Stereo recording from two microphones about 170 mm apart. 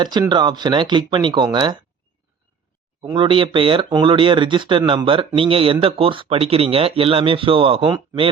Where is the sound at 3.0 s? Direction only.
30° right (ahead or behind).